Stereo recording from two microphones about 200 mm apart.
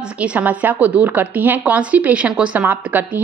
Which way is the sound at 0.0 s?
5° right (ahead or behind).